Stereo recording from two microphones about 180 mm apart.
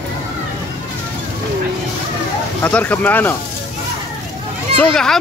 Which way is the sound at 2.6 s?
10° left (ahead or behind).